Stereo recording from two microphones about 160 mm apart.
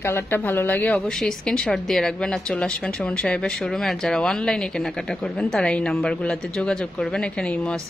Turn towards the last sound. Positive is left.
turn(degrees=5)  # may be behind; listen again after turning